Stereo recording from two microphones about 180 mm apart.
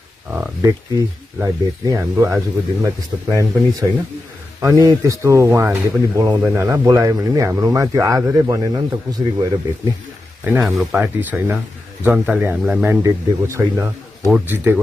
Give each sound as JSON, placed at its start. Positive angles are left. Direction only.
{"t": 0.6, "sound": "speech", "side_deg": -20}
{"t": 10.4, "sound": "speech", "side_deg": -5}